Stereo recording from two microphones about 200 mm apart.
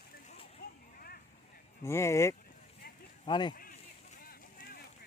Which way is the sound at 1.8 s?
15° left (ahead or behind).